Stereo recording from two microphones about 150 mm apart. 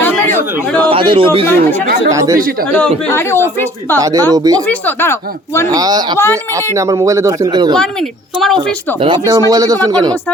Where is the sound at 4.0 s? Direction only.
25° right (ahead or behind).